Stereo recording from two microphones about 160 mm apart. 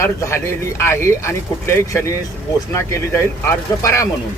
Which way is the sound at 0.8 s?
15° left (ahead or behind).